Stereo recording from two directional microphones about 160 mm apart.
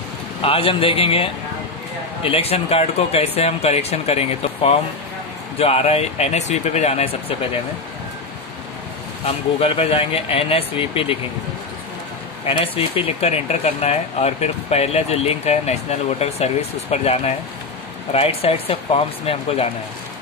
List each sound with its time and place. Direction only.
0.4 s speech: 35° left (ahead or behind)
9.6 s speech: 35° left (ahead or behind)
12.4 s speech: 35° left (ahead or behind)